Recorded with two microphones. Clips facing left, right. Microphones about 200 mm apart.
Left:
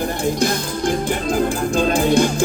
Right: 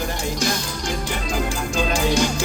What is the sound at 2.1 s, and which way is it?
Music, 55° left (ahead or behind).